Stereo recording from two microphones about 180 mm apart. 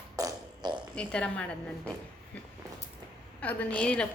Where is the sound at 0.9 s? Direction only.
5° left (ahead or behind).